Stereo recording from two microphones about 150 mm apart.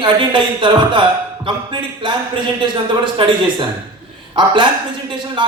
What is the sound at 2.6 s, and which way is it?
A man's voice, 30° right (ahead or behind).